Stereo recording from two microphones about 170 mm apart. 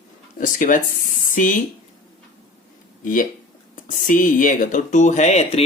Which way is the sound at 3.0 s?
50° left (ahead or behind).